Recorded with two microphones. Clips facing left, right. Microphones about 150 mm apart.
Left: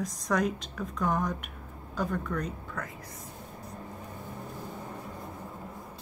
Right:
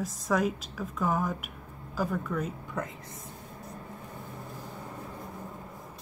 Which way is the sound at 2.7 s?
20° right (ahead or behind).